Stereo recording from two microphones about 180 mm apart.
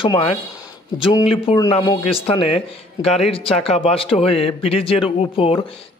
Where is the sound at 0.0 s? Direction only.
30° left (ahead or behind).